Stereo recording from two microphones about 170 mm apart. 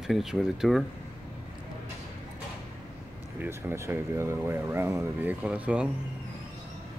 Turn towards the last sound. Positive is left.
turn(degrees=-5)  # may be behind; listen again after turning